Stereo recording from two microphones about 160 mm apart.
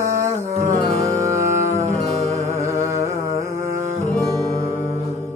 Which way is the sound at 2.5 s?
20° right (ahead or behind).